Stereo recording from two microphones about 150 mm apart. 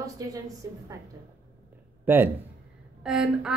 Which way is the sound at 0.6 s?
20° right (ahead or behind).